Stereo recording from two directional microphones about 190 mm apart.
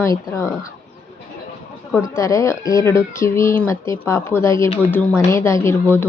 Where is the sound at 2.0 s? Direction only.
15° left (ahead or behind).